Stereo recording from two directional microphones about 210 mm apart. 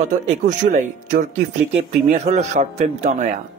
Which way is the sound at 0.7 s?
40° right (ahead or behind).